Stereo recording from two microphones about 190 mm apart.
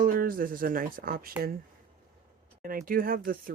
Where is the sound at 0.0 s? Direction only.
50° right (ahead or behind).